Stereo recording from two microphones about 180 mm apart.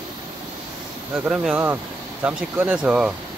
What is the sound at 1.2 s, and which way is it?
Speech, 5° right (ahead or behind).